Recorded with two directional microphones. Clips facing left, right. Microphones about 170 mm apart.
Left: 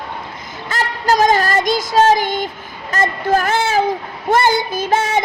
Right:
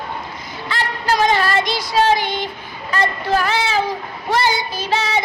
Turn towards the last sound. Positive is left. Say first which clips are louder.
# left 4 dB
turn(degrees=50)  # may be behind; listen again after turning